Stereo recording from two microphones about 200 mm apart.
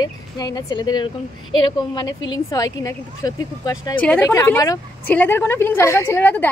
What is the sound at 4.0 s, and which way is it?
A woman's voice, 5° left (ahead or behind).